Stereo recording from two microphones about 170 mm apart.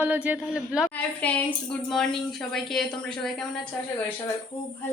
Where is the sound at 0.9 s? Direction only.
10° left (ahead or behind).